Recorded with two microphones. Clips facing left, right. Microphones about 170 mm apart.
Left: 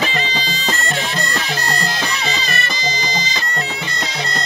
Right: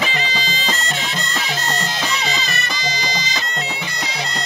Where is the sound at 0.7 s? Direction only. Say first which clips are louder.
Left 5 dB; 20° right (ahead or behind).